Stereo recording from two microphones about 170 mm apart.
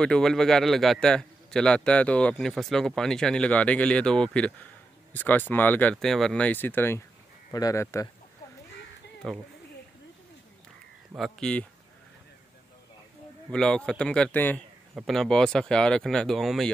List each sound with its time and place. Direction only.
0.0 s a man's voice: 5° left (ahead or behind)
9.2 s a man's voice: 5° left (ahead or behind)
11.1 s a man's voice: centre (ahead or behind)
13.5 s a man's voice: 5° left (ahead or behind)